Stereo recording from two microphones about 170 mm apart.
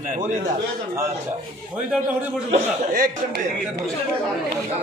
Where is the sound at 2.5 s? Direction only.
55° right (ahead or behind).